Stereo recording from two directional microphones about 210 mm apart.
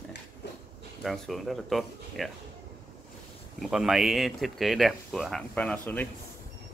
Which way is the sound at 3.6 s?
Centre (ahead or behind).